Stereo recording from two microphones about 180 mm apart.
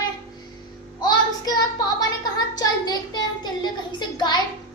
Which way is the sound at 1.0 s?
20° left (ahead or behind).